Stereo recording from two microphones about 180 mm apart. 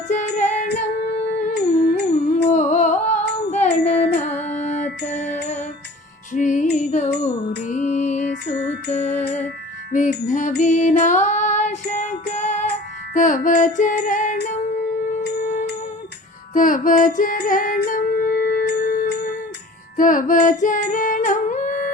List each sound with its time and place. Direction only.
0.1 s music: 40° left (ahead or behind)
2.0 s music: 40° left (ahead or behind)
9.9 s wind chime: 45° left (ahead or behind)
10.2 s music: 40° left (ahead or behind); by 18.8 s 60° left (ahead or behind)
18.8 s music: 45° left (ahead or behind)